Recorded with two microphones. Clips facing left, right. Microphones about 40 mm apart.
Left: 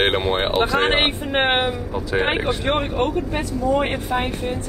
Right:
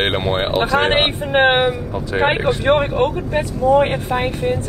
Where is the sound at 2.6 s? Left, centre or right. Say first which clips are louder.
Right 5 dB; right.